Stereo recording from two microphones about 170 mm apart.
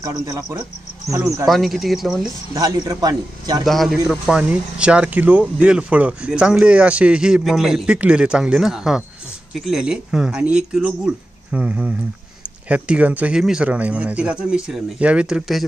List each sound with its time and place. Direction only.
0.0 s a man's voice: 20° right (ahead or behind)
1.4 s speech: centre (ahead or behind)
2.5 s a man's voice: 20° right (ahead or behind)
3.6 s speech: centre (ahead or behind)